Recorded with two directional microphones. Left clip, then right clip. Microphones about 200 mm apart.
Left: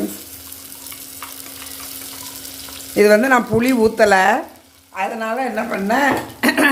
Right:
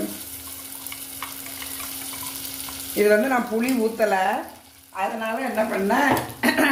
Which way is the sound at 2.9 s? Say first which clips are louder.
Left 7 dB; 45° left (ahead or behind).